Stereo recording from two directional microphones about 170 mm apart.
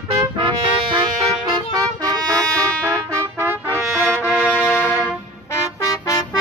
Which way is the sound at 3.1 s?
15° right (ahead or behind).